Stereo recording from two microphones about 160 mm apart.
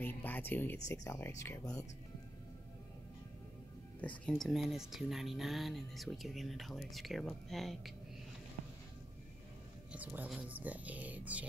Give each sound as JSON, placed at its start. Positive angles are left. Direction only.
{"t": 0.0, "sound": "speech", "side_deg": 10}
{"t": 4.0, "sound": "speech", "side_deg": 5}
{"t": 9.9, "sound": "speech", "side_deg": -10}